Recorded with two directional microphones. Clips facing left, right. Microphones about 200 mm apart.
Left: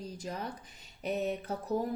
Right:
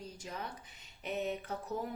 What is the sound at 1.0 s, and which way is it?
Speech, 40° left (ahead or behind).